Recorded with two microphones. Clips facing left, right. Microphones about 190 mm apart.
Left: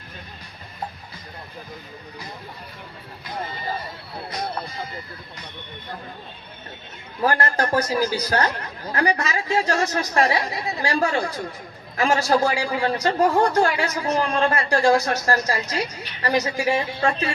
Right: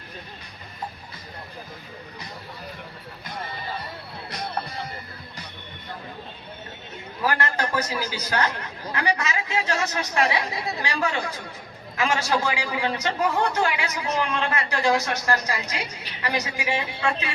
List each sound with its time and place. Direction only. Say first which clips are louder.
4.3 s music: left 2 dB; 65° right (ahead or behind)
7.3 s a man's voice: left 4 dB; 35° left (ahead or behind)